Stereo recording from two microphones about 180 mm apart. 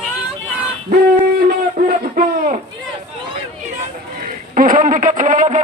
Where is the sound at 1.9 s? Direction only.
50° right (ahead or behind).